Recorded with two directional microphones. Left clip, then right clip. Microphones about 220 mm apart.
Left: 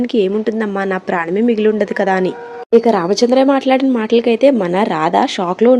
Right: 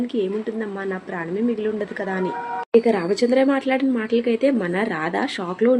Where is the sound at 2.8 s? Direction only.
25° left (ahead or behind).